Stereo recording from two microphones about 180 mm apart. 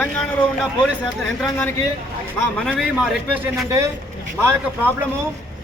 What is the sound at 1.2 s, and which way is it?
Speech, 10° left (ahead or behind).